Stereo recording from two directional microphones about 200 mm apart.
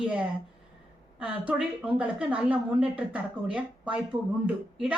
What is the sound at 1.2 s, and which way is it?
Speech, 5° right (ahead or behind).